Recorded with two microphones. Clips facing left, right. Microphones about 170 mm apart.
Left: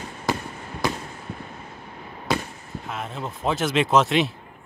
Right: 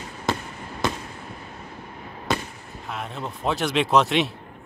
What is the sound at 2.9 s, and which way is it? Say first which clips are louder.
Speech: even; centre (ahead or behind).